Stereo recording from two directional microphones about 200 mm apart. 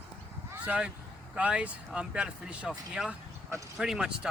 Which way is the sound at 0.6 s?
5° right (ahead or behind).